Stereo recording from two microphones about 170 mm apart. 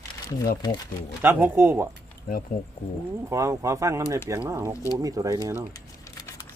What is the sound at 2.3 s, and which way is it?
Speech, 50° left (ahead or behind).